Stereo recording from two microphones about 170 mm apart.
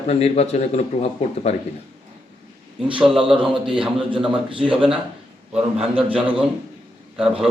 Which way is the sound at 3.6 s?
30° right (ahead or behind).